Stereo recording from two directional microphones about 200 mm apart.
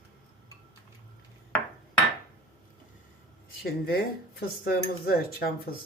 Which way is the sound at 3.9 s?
50° left (ahead or behind).